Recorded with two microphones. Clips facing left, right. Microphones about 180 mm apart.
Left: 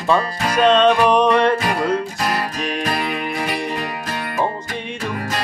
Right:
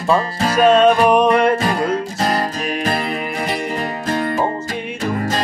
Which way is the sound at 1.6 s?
30° right (ahead or behind).